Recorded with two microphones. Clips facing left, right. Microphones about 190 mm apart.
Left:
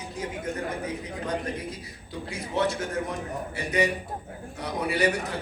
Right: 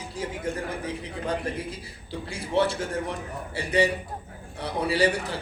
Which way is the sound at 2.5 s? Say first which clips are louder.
Right 2 dB; 30° right (ahead or behind).